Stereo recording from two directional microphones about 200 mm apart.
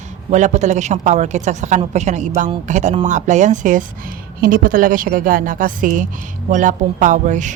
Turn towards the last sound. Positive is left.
turn(degrees=-40)  # may be behind; listen again after turning